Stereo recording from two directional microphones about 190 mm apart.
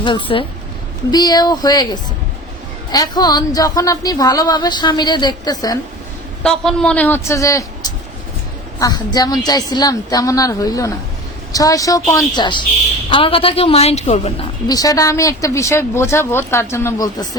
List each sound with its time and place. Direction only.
0.0 s speech: 25° left (ahead or behind)
6.4 s speech: 5° left (ahead or behind); by 14.3 s 35° left (ahead or behind)
14.7 s speech: 20° left (ahead or behind)